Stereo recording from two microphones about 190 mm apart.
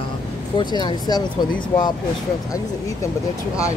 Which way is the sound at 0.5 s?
25° left (ahead or behind).